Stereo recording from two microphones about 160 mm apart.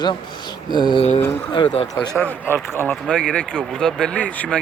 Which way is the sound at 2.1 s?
15° left (ahead or behind).